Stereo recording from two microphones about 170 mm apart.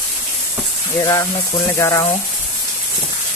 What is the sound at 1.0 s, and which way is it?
Speech, 20° left (ahead or behind).